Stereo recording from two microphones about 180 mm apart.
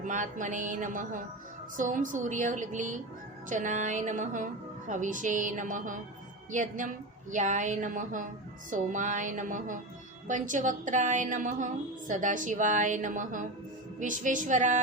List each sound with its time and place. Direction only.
0.0 s a woman's voice: 45° right (ahead or behind)